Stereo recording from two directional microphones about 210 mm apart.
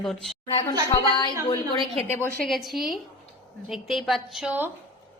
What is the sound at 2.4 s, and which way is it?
A woman's voice, centre (ahead or behind).